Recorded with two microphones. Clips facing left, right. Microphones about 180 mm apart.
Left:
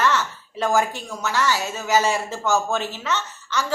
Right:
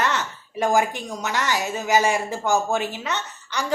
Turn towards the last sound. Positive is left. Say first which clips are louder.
# left 3 dB
turn(degrees=-15)  # may be behind; listen again after turning